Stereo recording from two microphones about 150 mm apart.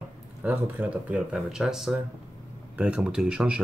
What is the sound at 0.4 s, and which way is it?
Speech, 10° right (ahead or behind).